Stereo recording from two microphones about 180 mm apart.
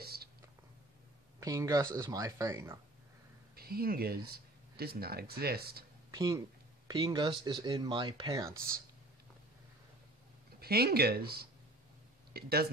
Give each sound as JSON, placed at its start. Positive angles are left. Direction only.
{"t": 0.0, "sound": "a sound", "side_deg": -60}
{"t": 1.4, "sound": "speech", "side_deg": -20}
{"t": 3.5, "sound": "speech", "side_deg": -55}
{"t": 6.1, "sound": "speech", "side_deg": -20}
{"t": 10.6, "sound": "speech", "side_deg": -60}